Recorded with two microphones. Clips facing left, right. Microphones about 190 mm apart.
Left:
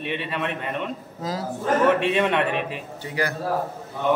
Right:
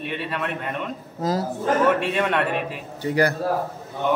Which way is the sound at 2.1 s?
Centre (ahead or behind).